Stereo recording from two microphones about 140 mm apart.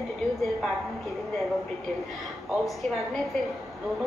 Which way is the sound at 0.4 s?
Centre (ahead or behind).